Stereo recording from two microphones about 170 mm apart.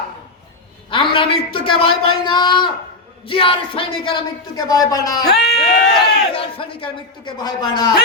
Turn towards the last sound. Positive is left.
turn(degrees=25)  # may be behind; listen again after turning